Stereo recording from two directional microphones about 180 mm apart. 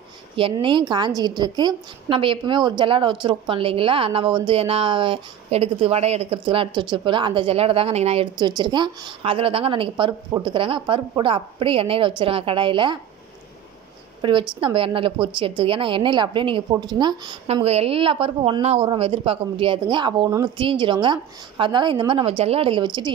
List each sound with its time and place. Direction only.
0.4 s a woman's voice: 30° right (ahead or behind)
14.2 s a woman's voice: 25° right (ahead or behind)